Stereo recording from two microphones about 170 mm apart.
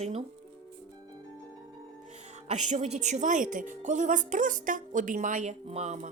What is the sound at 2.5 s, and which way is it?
A woman's voice, 40° right (ahead or behind).